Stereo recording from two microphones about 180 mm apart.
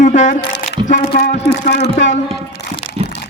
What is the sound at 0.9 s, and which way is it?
Speech, 65° left (ahead or behind).